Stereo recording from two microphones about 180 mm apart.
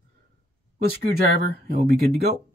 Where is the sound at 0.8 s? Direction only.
60° right (ahead or behind).